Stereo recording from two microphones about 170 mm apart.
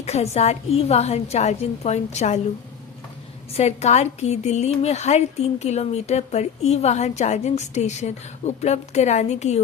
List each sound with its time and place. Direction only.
0.0 s a woman's voice: 40° left (ahead or behind)
3.5 s a woman's voice: 40° left (ahead or behind)